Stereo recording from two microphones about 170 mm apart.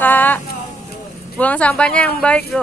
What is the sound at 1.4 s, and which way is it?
Speech, 10° left (ahead or behind).